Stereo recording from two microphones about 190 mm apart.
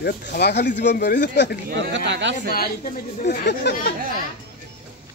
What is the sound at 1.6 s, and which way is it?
Speech, 60° right (ahead or behind).